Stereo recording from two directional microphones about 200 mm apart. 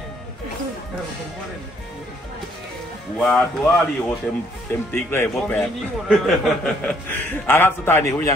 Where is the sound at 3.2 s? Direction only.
5° left (ahead or behind).